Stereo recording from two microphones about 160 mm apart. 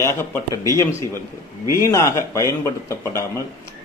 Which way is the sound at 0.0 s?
15° left (ahead or behind).